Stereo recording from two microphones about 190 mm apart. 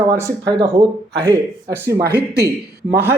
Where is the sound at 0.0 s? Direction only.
15° right (ahead or behind).